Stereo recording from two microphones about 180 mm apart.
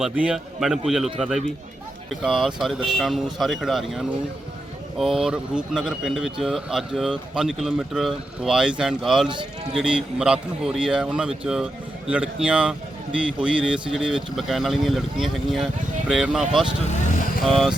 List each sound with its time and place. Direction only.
0.0 s speech: 5° right (ahead or behind)
16.9 s vehicle: 45° left (ahead or behind)
17.4 s speech: centre (ahead or behind)